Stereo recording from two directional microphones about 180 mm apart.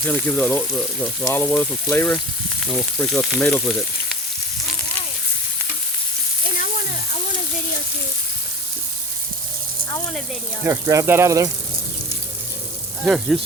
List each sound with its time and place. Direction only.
0.1 s speech: 10° left (ahead or behind)
2.6 s frying: 5° left (ahead or behind)
10.6 s speech: 15° right (ahead or behind)
13.1 s frying: centre (ahead or behind)